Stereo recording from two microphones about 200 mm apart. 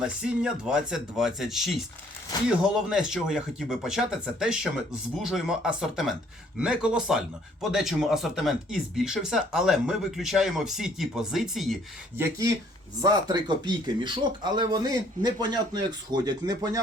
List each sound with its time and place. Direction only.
0.0 s speech: 5° right (ahead or behind)
12.1 s speech: 10° right (ahead or behind)